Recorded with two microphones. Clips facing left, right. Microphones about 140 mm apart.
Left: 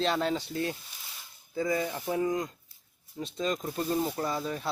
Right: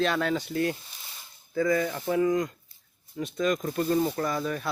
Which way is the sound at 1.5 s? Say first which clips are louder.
Right 4 dB; 20° left (ahead or behind).